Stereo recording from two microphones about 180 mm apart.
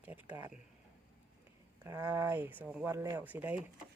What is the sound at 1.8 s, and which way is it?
Speech, 15° right (ahead or behind).